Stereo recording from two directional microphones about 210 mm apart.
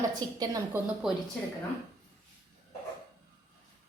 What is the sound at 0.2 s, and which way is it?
Speech, 15° right (ahead or behind).